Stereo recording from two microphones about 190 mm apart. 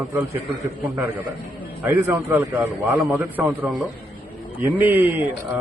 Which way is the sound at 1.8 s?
10° right (ahead or behind).